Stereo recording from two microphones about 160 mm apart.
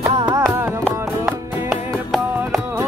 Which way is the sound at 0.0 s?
25° right (ahead or behind).